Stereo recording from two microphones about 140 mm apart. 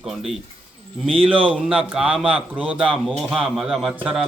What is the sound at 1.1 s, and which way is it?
Speech, 40° right (ahead or behind).